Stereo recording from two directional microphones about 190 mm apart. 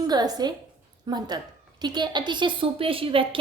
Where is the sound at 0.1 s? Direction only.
20° right (ahead or behind).